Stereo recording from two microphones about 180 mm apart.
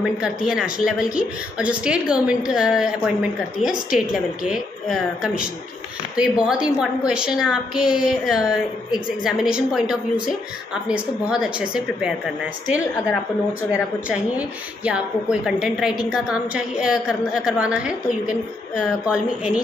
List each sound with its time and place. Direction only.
0.0 s a woman's voice: 5° right (ahead or behind)
14.9 s a woman's voice: 5° right (ahead or behind)